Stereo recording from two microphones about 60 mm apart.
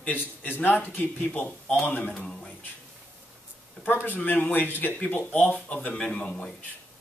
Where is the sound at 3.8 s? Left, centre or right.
Left; by 6.3 s centre.